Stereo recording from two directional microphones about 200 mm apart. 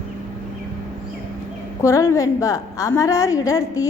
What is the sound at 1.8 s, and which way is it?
A woman's voice, 15° left (ahead or behind).